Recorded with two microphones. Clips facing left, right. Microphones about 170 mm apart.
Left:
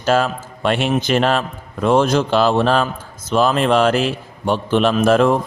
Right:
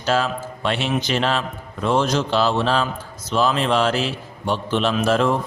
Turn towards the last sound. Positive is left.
turn(degrees=50)  # may be behind; listen again after turning